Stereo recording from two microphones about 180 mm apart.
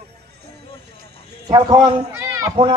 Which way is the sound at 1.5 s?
20° right (ahead or behind).